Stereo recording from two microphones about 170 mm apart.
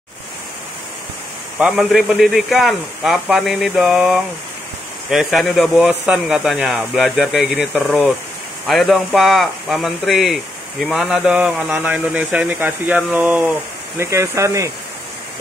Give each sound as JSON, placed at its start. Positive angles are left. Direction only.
{"t": 1.6, "sound": "speech", "side_deg": 0}